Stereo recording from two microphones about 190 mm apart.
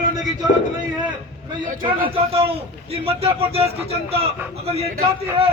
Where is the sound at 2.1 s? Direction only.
30° right (ahead or behind).